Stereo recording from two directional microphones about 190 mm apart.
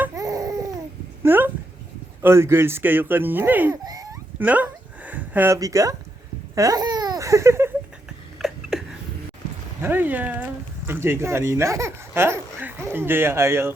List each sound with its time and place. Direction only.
0.0 s babbling: 15° right (ahead or behind)
1.2 s dog: 10° right (ahead or behind)
2.2 s speech: 15° right (ahead or behind)
4.4 s a sound: 10° right (ahead or behind)
6.6 s babbling: 20° right (ahead or behind)
8.4 s a sound: centre (ahead or behind)
10.8 s speech: 10° right (ahead or behind)